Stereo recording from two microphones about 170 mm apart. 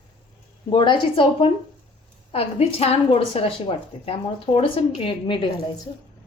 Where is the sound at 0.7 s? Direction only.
30° left (ahead or behind).